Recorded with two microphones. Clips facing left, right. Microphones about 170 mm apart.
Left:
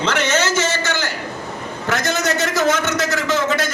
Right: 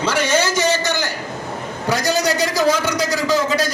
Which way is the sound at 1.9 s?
35° right (ahead or behind).